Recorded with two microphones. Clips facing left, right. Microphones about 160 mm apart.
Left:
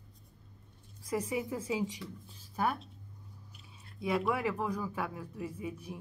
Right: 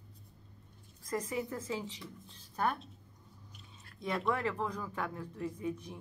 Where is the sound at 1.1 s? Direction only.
10° left (ahead or behind).